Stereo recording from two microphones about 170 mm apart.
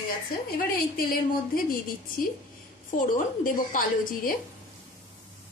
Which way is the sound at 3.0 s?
50° left (ahead or behind).